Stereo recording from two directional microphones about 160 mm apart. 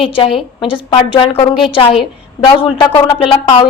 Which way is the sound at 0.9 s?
35° left (ahead or behind).